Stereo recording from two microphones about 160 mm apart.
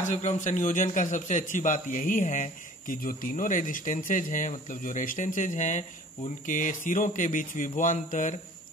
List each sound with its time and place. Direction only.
0.0 s a man's voice: 50° left (ahead or behind)